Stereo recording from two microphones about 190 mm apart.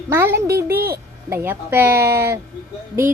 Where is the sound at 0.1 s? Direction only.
10° right (ahead or behind).